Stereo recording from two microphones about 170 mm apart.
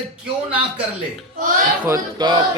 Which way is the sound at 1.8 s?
20° right (ahead or behind).